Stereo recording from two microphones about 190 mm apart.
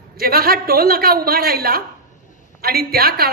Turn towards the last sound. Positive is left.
turn(degrees=-50)  # may be behind; listen again after turning